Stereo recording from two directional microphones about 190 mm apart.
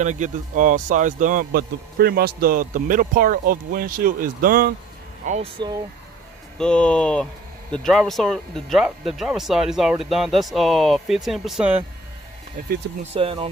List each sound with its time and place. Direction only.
0.0 s speech: 40° right (ahead or behind)
5.2 s speech: 40° right (ahead or behind)
6.6 s speech: 5° left (ahead or behind)
12.6 s speech: 45° right (ahead or behind)
13.0 s speech: 30° right (ahead or behind)